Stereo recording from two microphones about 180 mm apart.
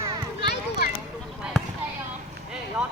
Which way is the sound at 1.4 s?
5° right (ahead or behind).